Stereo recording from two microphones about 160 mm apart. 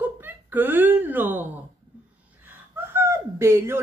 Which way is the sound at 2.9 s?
15° right (ahead or behind).